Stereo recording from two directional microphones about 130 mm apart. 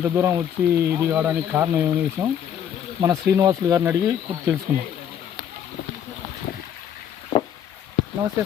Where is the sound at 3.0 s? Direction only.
25° right (ahead or behind).